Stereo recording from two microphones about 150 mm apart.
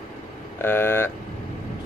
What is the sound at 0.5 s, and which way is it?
Speech, 15° left (ahead or behind).